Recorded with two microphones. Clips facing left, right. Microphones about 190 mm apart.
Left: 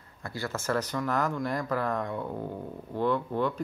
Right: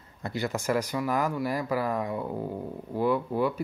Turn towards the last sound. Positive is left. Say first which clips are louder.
# right 2 dB
turn(degrees=-10)  # may be behind; listen again after turning